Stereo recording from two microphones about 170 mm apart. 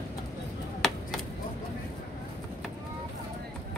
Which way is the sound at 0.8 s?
Centre (ahead or behind).